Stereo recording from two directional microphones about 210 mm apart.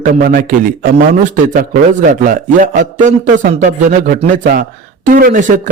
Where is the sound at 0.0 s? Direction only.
45° right (ahead or behind).